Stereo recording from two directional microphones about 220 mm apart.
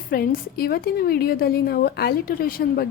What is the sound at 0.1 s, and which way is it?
A woman's voice, 45° left (ahead or behind).